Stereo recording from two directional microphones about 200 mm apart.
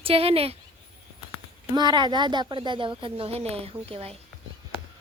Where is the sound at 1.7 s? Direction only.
20° right (ahead or behind).